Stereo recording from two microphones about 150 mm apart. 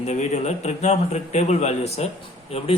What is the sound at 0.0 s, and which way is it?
Speech, 50° left (ahead or behind).